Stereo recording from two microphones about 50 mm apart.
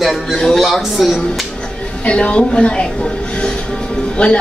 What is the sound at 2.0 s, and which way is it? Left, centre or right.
A woman's voice, left.